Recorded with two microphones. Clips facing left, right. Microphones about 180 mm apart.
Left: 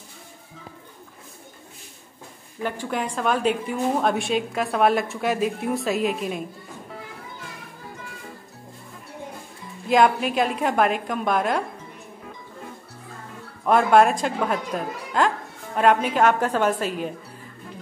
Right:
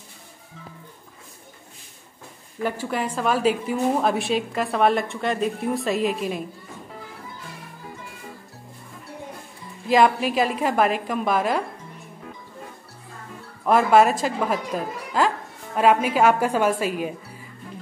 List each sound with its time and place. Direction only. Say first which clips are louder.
2.6 s a woman's voice: right 1 dB; 5° right (ahead or behind)
9.8 s a woman's voice: even; centre (ahead or behind)
13.7 s a woman's voice: even; centre (ahead or behind)